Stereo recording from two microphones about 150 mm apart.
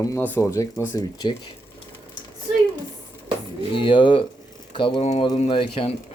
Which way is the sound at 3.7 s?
35° left (ahead or behind).